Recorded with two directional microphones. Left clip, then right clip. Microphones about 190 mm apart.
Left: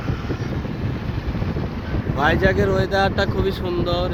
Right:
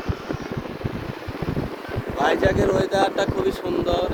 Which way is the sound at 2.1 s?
15° right (ahead or behind).